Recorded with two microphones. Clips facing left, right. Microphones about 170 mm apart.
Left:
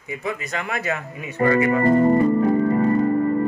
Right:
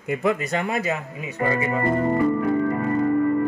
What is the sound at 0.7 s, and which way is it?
Speech, 20° right (ahead or behind).